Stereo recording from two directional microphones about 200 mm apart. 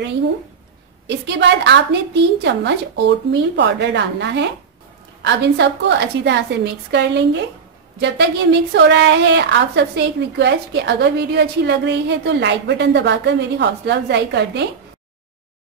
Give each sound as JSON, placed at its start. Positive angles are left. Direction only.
{"t": 1.0, "sound": "a woman's voice", "side_deg": -60}